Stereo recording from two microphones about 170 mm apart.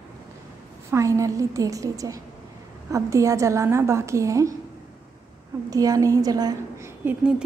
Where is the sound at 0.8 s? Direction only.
15° right (ahead or behind).